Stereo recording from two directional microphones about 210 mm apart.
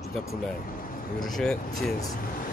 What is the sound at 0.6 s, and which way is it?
Speech, 40° left (ahead or behind).